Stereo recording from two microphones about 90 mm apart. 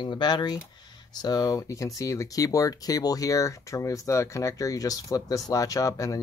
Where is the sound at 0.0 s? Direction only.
55° left (ahead or behind).